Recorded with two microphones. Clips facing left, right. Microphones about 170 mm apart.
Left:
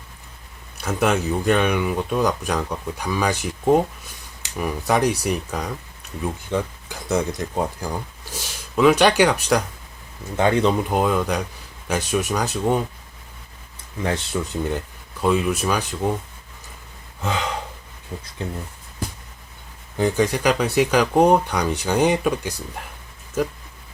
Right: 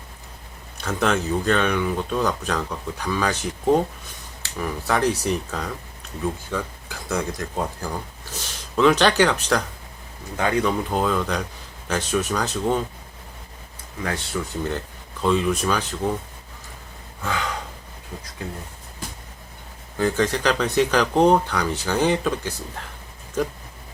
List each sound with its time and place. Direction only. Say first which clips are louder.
0.8 s speech: left 2 dB; 10° left (ahead or behind)
10.3 s speech: left 3 dB; 25° left (ahead or behind)
14.0 s speech: left 3 dB; 20° left (ahead or behind)
15.2 s speech: left 1 dB; 10° left (ahead or behind)
17.2 s speech: left 2 dB; 20° left (ahead or behind)
20.0 s speech: left 2 dB; 15° left (ahead or behind)